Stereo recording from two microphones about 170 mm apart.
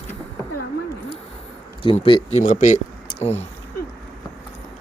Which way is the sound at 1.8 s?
30° left (ahead or behind).